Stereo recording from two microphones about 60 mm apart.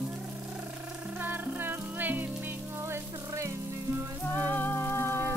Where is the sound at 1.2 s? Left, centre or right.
Right.